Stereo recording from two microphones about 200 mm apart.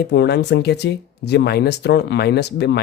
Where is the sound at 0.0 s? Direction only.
55° left (ahead or behind).